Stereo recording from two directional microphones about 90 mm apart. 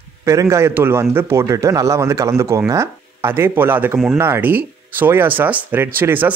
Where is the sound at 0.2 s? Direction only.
35° right (ahead or behind).